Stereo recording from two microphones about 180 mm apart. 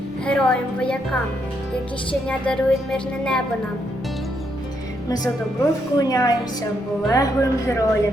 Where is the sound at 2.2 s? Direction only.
5° left (ahead or behind).